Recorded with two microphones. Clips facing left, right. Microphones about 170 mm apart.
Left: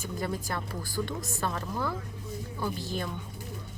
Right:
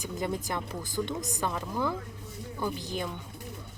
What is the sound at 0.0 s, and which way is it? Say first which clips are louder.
Speech: right 1 dB; 20° right (ahead or behind).